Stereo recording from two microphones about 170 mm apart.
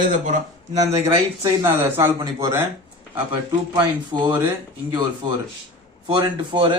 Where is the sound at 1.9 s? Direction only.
15° right (ahead or behind).